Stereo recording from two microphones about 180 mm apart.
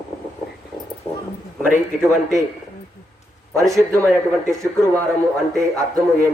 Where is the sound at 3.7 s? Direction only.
15° right (ahead or behind).